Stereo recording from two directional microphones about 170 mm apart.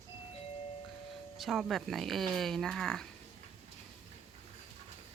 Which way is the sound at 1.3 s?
Centre (ahead or behind).